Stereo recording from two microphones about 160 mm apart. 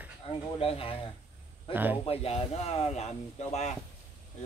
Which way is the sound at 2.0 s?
40° left (ahead or behind).